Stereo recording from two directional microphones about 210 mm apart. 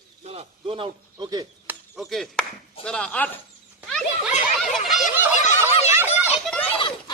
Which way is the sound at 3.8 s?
Centre (ahead or behind).